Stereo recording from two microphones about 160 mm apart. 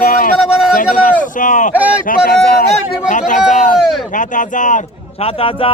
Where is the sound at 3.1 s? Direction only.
55° left (ahead or behind).